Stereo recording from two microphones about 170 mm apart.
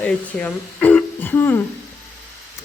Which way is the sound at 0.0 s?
5° left (ahead or behind).